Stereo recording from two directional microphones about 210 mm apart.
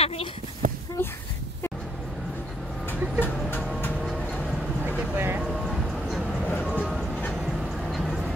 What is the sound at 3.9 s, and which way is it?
Music, 5° right (ahead or behind).